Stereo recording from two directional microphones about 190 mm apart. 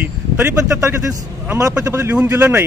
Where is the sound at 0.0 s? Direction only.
15° right (ahead or behind).